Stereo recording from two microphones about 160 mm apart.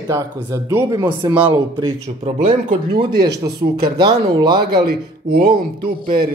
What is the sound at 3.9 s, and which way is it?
Speech, 30° right (ahead or behind).